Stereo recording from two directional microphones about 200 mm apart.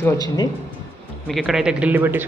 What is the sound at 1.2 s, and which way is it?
Speech, centre (ahead or behind).